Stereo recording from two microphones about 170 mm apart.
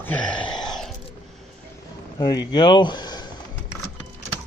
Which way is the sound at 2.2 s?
25° left (ahead or behind).